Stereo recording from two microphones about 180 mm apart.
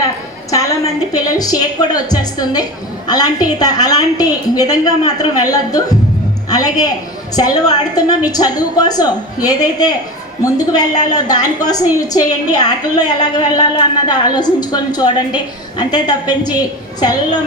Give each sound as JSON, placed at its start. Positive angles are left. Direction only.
{"t": 0.5, "sound": "a woman's voice", "side_deg": 20}